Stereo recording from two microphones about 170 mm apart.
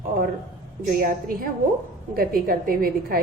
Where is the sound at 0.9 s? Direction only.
55° right (ahead or behind).